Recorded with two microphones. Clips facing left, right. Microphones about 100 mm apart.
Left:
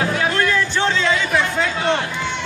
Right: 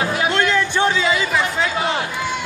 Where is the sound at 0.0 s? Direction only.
10° right (ahead or behind).